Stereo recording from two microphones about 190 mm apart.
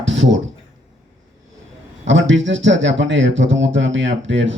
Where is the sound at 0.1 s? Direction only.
75° right (ahead or behind).